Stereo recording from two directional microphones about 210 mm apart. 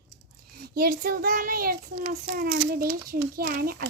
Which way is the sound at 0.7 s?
45° right (ahead or behind).